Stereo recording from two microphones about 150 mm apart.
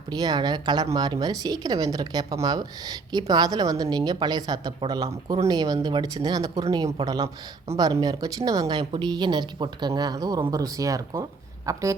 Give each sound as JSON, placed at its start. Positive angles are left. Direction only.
{"t": 0.1, "sound": "speech", "side_deg": -25}